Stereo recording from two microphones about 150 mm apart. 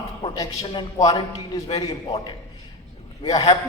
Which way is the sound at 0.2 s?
35° left (ahead or behind).